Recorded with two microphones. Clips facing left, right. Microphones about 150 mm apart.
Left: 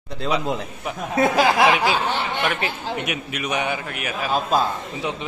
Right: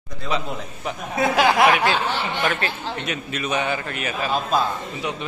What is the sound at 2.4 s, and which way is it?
A man's voice, 10° left (ahead or behind).